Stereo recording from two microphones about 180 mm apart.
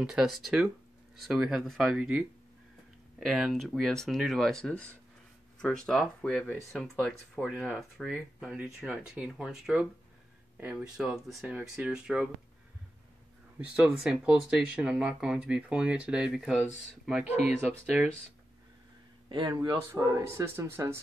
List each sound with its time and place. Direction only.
0.0 s speech: 5° right (ahead or behind)
13.6 s speech: 5° right (ahead or behind)
19.2 s a sound: 25° right (ahead or behind)
19.5 s speech: 25° right (ahead or behind)